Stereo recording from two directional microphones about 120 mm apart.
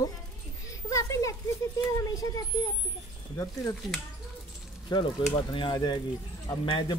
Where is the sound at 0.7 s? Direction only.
25° left (ahead or behind).